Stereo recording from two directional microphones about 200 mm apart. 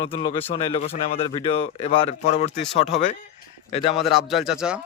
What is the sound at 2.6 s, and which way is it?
Speech, centre (ahead or behind).